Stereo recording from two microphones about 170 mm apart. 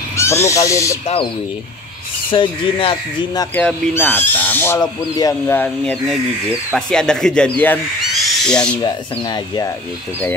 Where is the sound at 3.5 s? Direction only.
10° left (ahead or behind).